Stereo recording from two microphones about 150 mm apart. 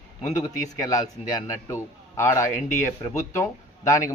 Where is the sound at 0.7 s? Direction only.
25° left (ahead or behind).